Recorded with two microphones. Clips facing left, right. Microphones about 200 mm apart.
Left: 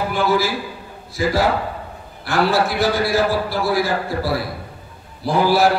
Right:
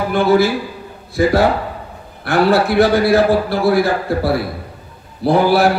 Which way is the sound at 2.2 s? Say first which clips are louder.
Right 5 dB; 60° right (ahead or behind).